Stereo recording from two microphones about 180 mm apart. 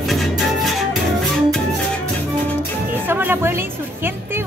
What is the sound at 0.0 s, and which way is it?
Music, centre (ahead or behind).